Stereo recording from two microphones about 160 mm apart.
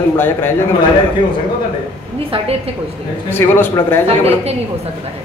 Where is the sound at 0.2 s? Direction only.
15° left (ahead or behind).